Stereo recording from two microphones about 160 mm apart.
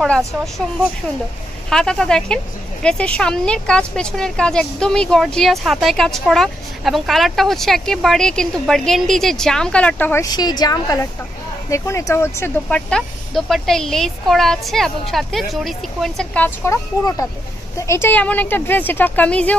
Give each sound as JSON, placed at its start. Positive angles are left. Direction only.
{"t": 1.7, "sound": "speech", "side_deg": 5}
{"t": 10.2, "sound": "a woman's voice", "side_deg": 25}